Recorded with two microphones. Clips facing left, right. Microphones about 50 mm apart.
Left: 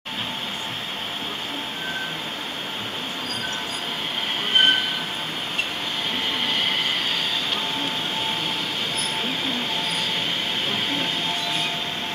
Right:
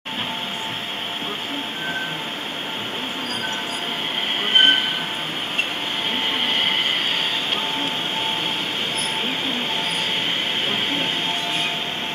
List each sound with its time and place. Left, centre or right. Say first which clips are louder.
4.6 s train: right 2 dB; right
10.7 s train: right 2 dB; right